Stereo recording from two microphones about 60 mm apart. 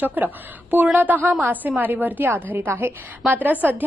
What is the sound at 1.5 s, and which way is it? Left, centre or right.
A woman's voice, right.